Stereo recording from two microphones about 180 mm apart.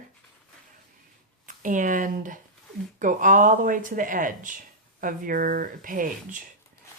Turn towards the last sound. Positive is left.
turn(degrees=-50)  # may be behind; listen again after turning